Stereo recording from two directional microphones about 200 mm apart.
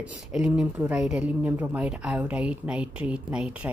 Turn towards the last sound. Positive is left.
turn(degrees=-5)  # may be behind; listen again after turning